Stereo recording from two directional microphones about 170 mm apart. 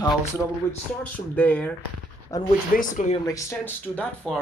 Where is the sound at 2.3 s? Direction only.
20° left (ahead or behind).